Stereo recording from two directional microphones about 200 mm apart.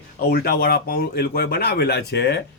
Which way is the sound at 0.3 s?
50° left (ahead or behind).